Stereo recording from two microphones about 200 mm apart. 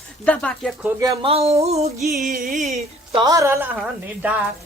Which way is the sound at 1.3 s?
30° right (ahead or behind).